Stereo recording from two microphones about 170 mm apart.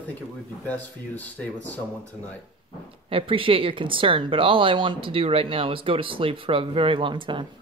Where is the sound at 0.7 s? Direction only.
10° left (ahead or behind).